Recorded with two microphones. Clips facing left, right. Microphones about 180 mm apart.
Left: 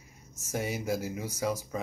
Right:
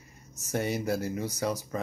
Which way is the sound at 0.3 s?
10° left (ahead or behind).